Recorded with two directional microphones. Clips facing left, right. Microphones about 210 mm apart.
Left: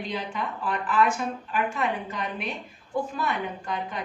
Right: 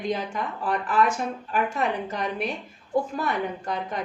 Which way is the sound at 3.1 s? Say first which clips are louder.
Right 2 dB; 40° right (ahead or behind).